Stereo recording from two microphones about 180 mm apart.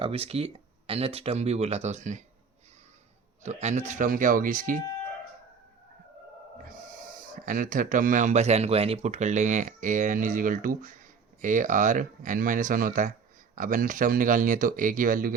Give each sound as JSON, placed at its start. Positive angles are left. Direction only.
{"t": 0.0, "sound": "speech", "side_deg": -35}
{"t": 3.4, "sound": "speech", "side_deg": -40}
{"t": 6.7, "sound": "speech", "side_deg": -50}